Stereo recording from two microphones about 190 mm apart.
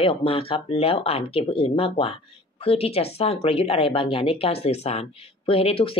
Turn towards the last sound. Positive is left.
turn(degrees=30)  # may be behind; listen again after turning